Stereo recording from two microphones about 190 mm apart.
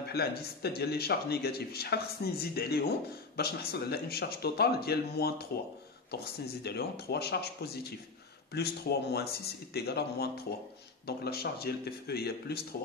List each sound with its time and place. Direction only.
0.1 s speech: 55° left (ahead or behind)